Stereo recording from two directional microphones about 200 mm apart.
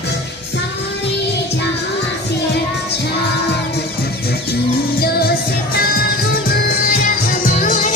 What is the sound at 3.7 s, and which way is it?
Music, 55° left (ahead or behind).